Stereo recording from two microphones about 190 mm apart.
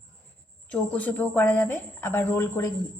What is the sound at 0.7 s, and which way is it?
Speech, 5° left (ahead or behind).